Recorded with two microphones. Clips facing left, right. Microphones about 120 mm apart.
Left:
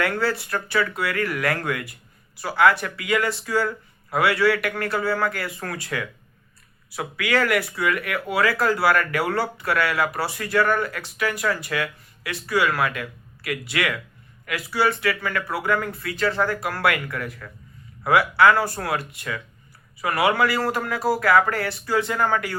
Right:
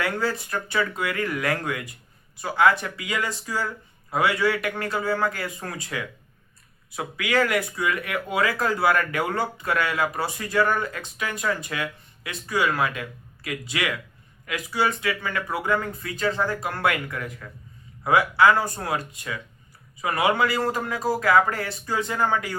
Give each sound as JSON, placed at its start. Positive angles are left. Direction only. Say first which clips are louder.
{"t": 0.0, "sound": "speech", "louder": "left 2 dB", "side_deg": -20}